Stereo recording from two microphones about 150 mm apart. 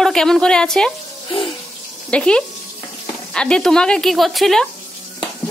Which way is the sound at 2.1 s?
5° left (ahead or behind).